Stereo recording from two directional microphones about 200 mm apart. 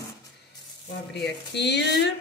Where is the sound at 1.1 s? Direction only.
55° left (ahead or behind).